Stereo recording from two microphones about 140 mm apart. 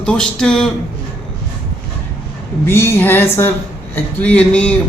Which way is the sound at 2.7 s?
20° left (ahead or behind).